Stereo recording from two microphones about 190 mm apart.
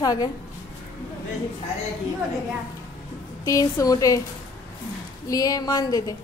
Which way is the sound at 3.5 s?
15° left (ahead or behind).